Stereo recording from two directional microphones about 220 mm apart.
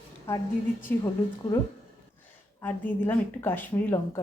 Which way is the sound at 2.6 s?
10° left (ahead or behind).